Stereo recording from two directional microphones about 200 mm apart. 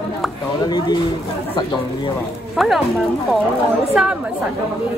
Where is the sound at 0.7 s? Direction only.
20° left (ahead or behind).